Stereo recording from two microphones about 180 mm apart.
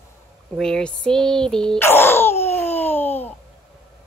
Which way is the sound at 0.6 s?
5° left (ahead or behind).